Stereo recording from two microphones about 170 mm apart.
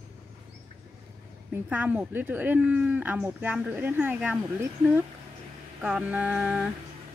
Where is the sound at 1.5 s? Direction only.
10° right (ahead or behind).